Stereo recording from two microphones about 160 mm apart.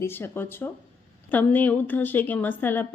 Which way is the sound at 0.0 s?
15° left (ahead or behind).